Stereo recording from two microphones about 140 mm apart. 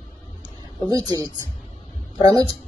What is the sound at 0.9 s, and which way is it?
Speech, 25° right (ahead or behind).